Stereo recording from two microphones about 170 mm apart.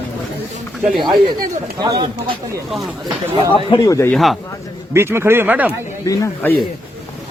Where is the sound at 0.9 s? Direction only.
Centre (ahead or behind).